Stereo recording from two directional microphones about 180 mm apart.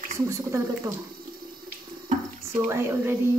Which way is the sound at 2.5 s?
10° right (ahead or behind).